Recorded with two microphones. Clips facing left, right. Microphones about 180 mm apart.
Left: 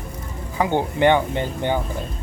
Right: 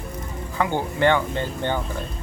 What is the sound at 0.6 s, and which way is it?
Speech, 20° left (ahead or behind).